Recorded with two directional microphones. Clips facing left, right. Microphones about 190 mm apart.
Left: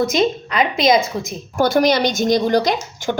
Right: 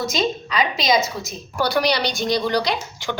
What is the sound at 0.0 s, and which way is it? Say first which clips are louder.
A woman's voice: left 6 dB; 55° left (ahead or behind).